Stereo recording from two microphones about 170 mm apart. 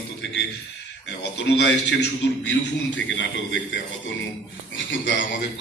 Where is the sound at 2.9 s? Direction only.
90° left.